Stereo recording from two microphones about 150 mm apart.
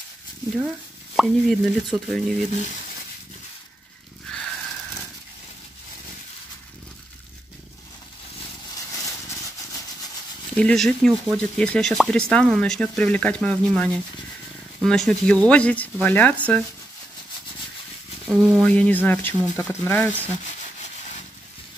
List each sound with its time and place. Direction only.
1.1 s speech: centre (ahead or behind)
4.3 s a sound: 5° left (ahead or behind)
10.5 s speech: 5° left (ahead or behind)
18.3 s speech: 5° right (ahead or behind)
18.6 s speech: 10° left (ahead or behind)